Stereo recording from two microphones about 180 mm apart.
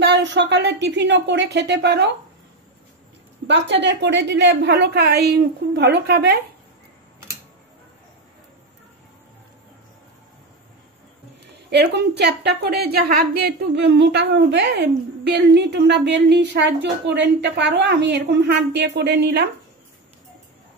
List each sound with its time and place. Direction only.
0.0 s a woman's voice: 80° right
3.4 s a woman's voice: 75° right (ahead or behind)
11.7 s a woman's voice: 70° right (ahead or behind)